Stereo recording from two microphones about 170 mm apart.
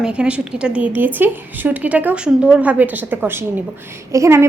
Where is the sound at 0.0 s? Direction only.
5° right (ahead or behind).